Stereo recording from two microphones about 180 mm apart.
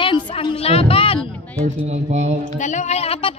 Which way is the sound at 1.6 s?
40° right (ahead or behind).